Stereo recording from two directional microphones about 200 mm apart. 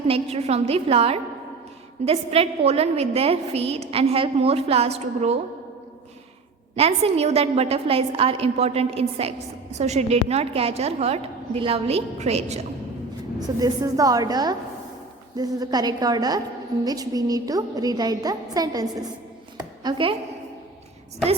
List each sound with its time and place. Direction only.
0.1 s a woman's voice: 30° right (ahead or behind)
6.7 s a woman's voice: 30° right (ahead or behind)
13.6 s a woman's voice: 20° right (ahead or behind)